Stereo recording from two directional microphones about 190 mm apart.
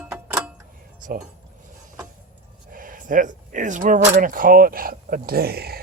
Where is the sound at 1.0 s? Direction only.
45° right (ahead or behind).